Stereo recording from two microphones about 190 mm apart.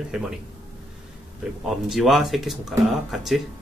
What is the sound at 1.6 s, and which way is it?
Speech, centre (ahead or behind).